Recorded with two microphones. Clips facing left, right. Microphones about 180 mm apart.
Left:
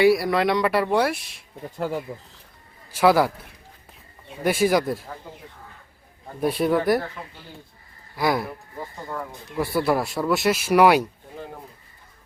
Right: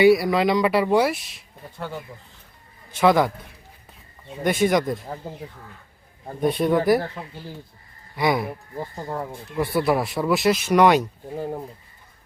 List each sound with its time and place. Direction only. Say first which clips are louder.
0.0 s speech: right 2 dB; centre (ahead or behind)
2.9 s speech: even; 5° left (ahead or behind)
4.4 s speech: even; 5° left (ahead or behind)
5.2 s speech: right 6 dB; 35° right (ahead or behind)
6.4 s speech: right 1 dB; 5° left (ahead or behind)
8.1 s speech: right 1 dB; centre (ahead or behind)
8.8 s speech: right 3 dB; 30° right (ahead or behind)
9.6 s speech: right 1 dB; centre (ahead or behind)